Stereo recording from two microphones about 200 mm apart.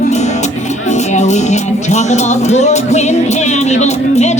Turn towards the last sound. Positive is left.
turn(degrees=35)  # may be behind; listen again after turning